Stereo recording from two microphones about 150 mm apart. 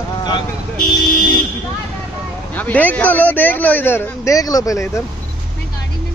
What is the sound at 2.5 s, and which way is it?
Speech, 10° left (ahead or behind).